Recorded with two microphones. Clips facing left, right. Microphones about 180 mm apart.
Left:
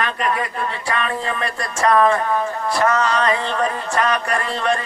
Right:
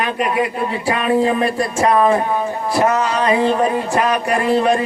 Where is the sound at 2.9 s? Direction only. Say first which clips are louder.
Right 1 dB; 10° right (ahead or behind).